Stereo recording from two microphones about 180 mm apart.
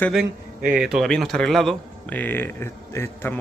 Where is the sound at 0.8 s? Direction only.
Centre (ahead or behind).